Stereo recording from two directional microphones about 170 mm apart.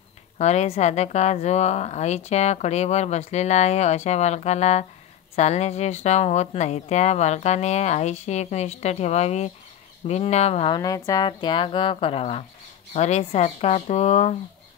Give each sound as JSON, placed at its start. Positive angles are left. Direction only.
{"t": 0.4, "sound": "speech", "side_deg": 40}
{"t": 10.8, "sound": "speech", "side_deg": 20}